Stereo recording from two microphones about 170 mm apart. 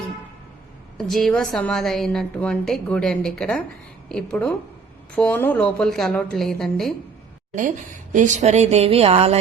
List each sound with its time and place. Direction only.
0.9 s a woman's voice: centre (ahead or behind)
7.5 s speech: 50° right (ahead or behind)